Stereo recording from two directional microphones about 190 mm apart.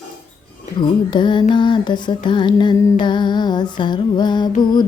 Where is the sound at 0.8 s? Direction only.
25° left (ahead or behind).